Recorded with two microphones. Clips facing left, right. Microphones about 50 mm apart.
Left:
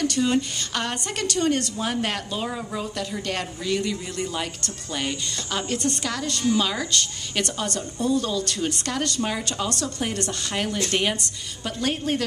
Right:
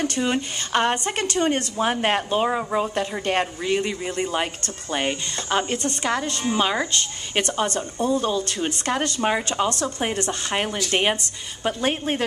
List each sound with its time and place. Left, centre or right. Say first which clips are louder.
0.0 s speech: left 1 dB; right